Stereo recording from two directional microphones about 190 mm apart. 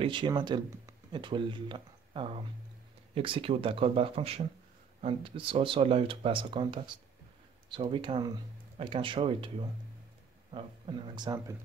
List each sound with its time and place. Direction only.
0.0 s speech: 25° right (ahead or behind)